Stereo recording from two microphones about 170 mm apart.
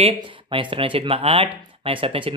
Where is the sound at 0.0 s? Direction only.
30° right (ahead or behind).